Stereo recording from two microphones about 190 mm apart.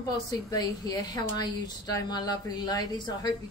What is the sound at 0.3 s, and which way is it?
Speech, 20° left (ahead or behind).